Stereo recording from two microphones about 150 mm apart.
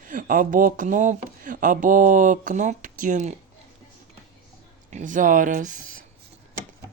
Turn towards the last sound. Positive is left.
turn(degrees=-60)  # may be behind; listen again after turning